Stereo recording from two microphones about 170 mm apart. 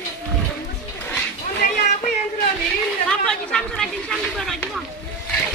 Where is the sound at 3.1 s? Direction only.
5° left (ahead or behind).